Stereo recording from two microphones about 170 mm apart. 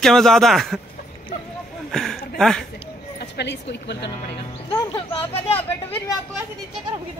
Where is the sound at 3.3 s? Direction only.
90° left.